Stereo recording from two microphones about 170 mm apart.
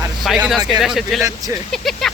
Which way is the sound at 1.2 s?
20° right (ahead or behind).